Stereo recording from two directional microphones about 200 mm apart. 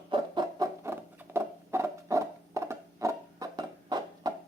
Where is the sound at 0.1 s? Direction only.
20° right (ahead or behind).